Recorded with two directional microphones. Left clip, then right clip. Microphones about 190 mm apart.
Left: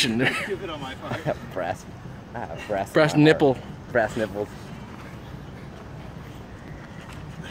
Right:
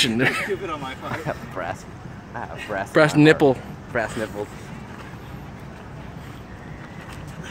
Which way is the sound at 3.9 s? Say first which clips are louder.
Left 2 dB; 40° left (ahead or behind).